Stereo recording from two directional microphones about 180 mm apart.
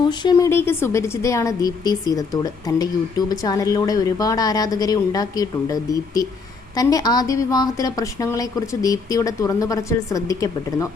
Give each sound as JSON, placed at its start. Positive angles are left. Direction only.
{"t": 0.0, "sound": "a woman's voice", "side_deg": 25}